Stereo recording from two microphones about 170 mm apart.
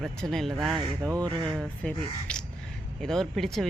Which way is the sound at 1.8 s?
5° left (ahead or behind).